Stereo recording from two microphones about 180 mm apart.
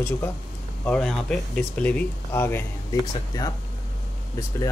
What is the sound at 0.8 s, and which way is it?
Speech, 5° left (ahead or behind).